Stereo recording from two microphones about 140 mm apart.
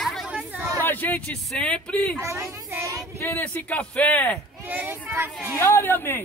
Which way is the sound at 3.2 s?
15° left (ahead or behind).